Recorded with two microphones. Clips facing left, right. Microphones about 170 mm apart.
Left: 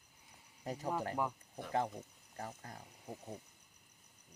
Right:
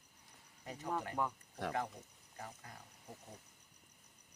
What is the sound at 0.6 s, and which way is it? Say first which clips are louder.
Speech: left 6 dB; 35° left (ahead or behind).